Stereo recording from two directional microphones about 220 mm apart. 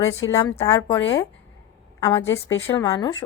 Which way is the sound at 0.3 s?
15° left (ahead or behind).